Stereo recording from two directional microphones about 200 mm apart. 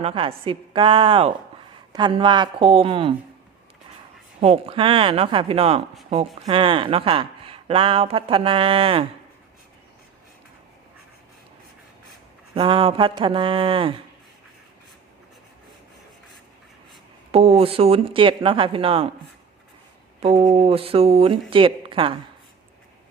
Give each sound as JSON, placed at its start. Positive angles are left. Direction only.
{"t": 0.0, "sound": "speech", "side_deg": -25}
{"t": 4.4, "sound": "speech", "side_deg": -30}
{"t": 12.5, "sound": "speech", "side_deg": -25}
{"t": 17.3, "sound": "speech", "side_deg": -30}
{"t": 20.2, "sound": "speech", "side_deg": -30}